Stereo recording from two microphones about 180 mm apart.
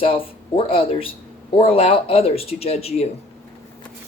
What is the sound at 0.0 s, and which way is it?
Speech, 30° left (ahead or behind).